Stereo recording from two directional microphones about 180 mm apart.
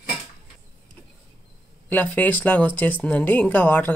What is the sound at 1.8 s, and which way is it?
Speech, 10° left (ahead or behind).